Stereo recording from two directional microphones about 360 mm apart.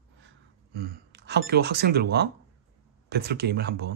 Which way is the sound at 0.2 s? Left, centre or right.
Right.